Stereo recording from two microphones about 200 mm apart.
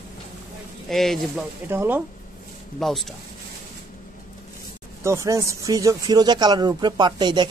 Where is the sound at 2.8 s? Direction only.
Centre (ahead or behind).